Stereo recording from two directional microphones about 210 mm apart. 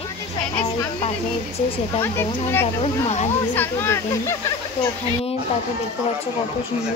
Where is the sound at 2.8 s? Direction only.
30° left (ahead or behind).